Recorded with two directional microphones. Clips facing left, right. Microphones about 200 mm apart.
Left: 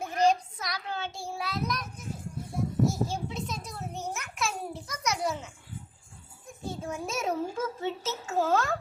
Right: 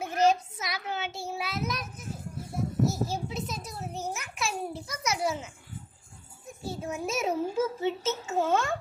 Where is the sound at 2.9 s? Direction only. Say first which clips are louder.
Even; 5° right (ahead or behind).